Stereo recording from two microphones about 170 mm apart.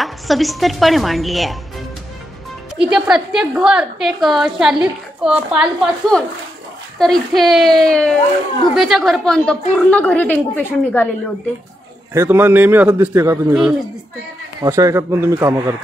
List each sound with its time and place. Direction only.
0.0 s a woman's voice: centre (ahead or behind)
2.8 s a woman's voice: 5° right (ahead or behind)
12.1 s a man's voice: 15° right (ahead or behind)
14.6 s a man's voice: 20° right (ahead or behind)